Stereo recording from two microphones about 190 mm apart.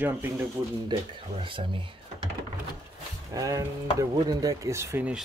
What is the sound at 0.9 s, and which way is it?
Speech, 25° right (ahead or behind).